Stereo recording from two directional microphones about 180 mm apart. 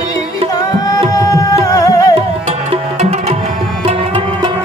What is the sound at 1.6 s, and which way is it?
Music, 20° left (ahead or behind).